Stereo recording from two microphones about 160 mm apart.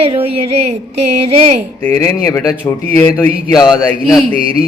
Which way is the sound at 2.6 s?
20° left (ahead or behind).